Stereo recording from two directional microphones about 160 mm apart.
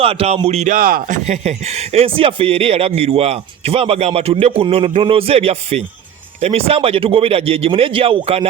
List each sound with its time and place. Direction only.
0.0 s speech: 35° right (ahead or behind)
0.7 s speech: 60° right (ahead or behind); by 8.4 s 35° right (ahead or behind)